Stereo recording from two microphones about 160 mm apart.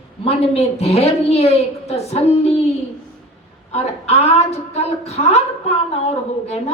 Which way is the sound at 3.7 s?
40° left (ahead or behind).